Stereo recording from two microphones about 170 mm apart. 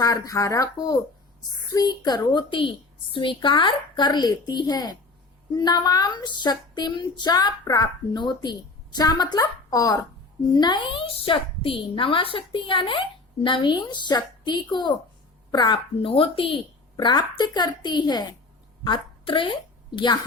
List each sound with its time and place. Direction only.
0.0 s a woman's voice: 20° left (ahead or behind)